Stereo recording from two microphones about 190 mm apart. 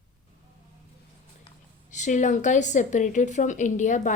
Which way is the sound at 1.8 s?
40° left (ahead or behind).